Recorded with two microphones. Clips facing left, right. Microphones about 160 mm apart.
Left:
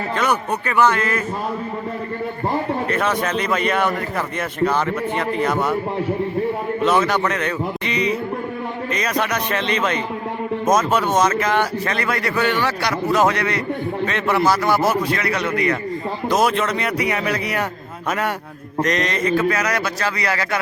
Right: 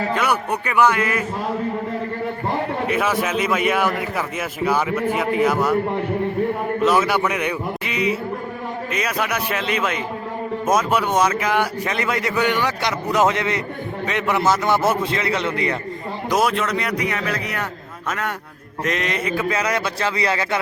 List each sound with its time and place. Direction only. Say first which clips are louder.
0.2 s speech: left 1 dB; 10° right (ahead or behind)
2.8 s speech: even; 5° right (ahead or behind)
6.8 s a man's voice: even; 5° right (ahead or behind); by 15.7 s 25° right (ahead or behind)
16.4 s speech: left 1 dB; centre (ahead or behind)
18.8 s speech: left 3 dB; 5° right (ahead or behind)
19.5 s a man's voice: left 1 dB; 25° right (ahead or behind)